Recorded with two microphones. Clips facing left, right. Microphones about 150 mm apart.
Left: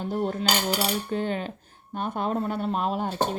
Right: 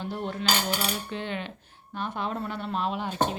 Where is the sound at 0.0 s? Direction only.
45° left (ahead or behind).